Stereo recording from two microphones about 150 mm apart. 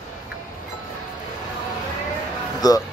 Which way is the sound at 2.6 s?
25° left (ahead or behind).